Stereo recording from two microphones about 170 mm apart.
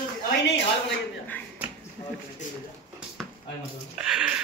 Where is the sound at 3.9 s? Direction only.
5° right (ahead or behind).